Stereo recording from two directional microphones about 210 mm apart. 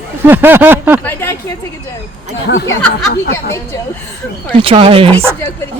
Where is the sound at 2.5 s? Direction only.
50° left (ahead or behind).